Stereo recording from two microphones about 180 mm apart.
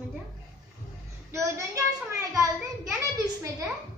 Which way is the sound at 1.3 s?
15° right (ahead or behind).